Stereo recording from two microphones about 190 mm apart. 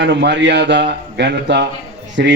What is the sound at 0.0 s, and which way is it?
A man's voice, 65° right (ahead or behind).